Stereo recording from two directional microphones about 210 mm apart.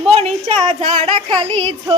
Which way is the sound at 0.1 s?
30° right (ahead or behind).